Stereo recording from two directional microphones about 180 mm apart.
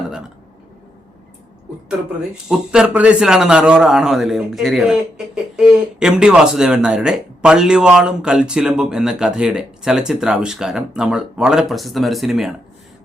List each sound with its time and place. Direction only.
2.5 s a man's voice: 5° right (ahead or behind)